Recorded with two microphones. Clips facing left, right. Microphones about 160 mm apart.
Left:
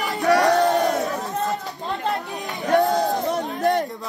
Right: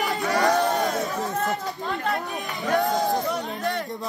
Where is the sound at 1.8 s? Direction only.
20° left (ahead or behind).